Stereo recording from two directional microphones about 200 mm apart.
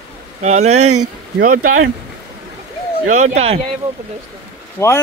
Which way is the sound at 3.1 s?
35° right (ahead or behind).